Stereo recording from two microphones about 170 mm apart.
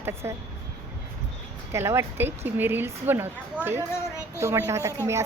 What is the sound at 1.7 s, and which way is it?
A woman's voice, 15° right (ahead or behind).